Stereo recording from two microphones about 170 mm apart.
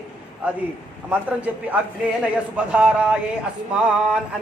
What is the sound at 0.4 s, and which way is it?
Speech, 10° right (ahead or behind).